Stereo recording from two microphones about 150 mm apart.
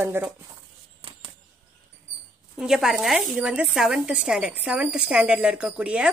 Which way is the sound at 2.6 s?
5° right (ahead or behind).